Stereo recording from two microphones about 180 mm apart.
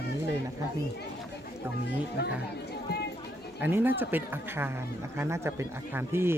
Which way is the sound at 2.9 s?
65° left (ahead or behind).